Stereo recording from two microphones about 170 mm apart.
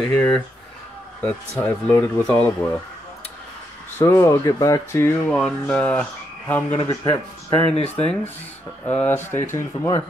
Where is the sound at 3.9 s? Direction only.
15° left (ahead or behind).